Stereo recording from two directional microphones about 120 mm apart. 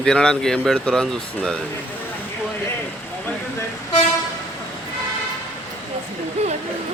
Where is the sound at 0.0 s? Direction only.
5° left (ahead or behind).